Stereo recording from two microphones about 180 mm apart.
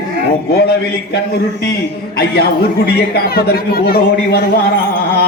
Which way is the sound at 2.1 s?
60° left (ahead or behind).